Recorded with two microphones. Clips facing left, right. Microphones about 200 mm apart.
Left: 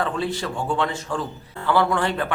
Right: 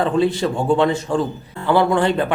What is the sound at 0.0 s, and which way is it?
Speech, 20° right (ahead or behind).